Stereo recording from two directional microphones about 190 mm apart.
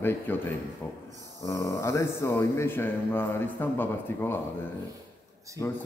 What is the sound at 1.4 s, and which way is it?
Speech, 15° left (ahead or behind).